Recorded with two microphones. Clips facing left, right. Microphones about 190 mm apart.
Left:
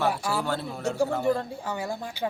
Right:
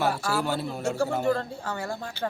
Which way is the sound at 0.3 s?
5° right (ahead or behind).